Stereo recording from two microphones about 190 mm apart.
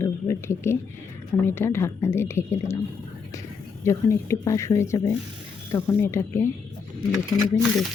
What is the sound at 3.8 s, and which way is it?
Speech, 15° left (ahead or behind).